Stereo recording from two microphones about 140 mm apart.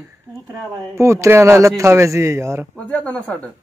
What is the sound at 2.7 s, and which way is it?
Speech, 10° left (ahead or behind).